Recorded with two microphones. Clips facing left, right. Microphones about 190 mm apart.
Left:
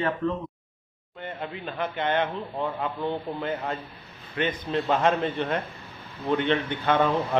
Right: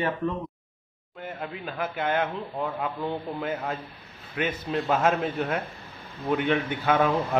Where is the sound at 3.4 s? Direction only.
5° right (ahead or behind).